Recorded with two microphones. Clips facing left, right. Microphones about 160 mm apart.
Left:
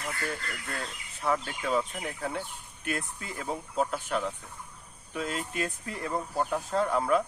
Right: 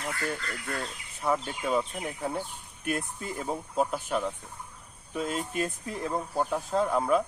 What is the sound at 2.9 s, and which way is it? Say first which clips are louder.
Speech: right 3 dB; 5° right (ahead or behind).